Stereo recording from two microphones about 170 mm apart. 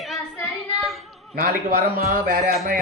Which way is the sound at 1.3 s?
55° right (ahead or behind).